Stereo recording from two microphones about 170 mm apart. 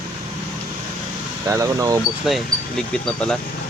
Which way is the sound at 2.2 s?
Centre (ahead or behind).